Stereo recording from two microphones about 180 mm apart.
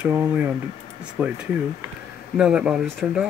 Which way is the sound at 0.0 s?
10° right (ahead or behind).